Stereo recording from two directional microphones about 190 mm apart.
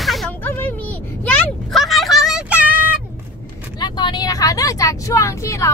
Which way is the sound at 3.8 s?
25° left (ahead or behind).